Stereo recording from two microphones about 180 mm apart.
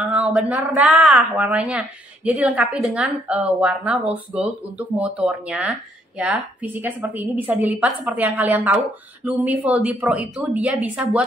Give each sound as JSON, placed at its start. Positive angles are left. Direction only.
{"t": 0.1, "sound": "a woman's voice", "side_deg": -5}